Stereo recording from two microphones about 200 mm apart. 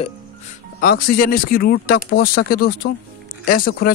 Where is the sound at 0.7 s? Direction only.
45° left (ahead or behind).